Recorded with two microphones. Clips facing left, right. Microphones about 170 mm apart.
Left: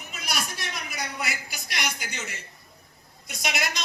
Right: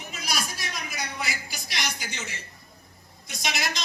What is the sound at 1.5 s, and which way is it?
Speech, centre (ahead or behind).